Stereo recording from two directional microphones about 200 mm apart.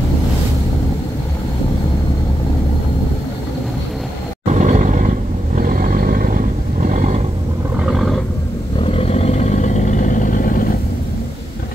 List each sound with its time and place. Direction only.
4.5 s a sound: 35° right (ahead or behind)
5.6 s roaring cats: 45° right (ahead or behind)
7.8 s roar: centre (ahead or behind)
8.8 s vehicle: 30° left (ahead or behind)